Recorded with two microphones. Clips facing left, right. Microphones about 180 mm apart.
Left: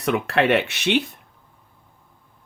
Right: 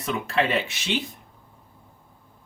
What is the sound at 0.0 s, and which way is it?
Speech, 70° left (ahead or behind).